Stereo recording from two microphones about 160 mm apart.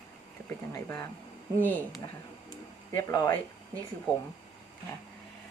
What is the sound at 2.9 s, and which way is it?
Speech, 20° left (ahead or behind).